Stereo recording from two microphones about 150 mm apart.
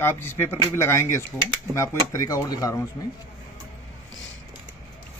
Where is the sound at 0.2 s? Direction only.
15° left (ahead or behind).